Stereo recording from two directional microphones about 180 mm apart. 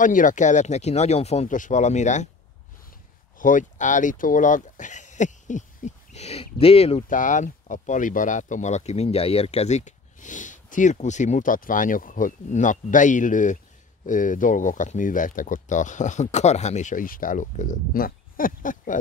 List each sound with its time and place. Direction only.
0.0 s speech: 45° left (ahead or behind)
3.3 s speech: 45° left (ahead or behind)
7.0 s speech: 45° left (ahead or behind)